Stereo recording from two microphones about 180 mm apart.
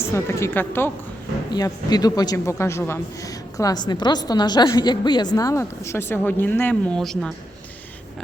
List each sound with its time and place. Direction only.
0.0 s a woman's voice: 15° left (ahead or behind)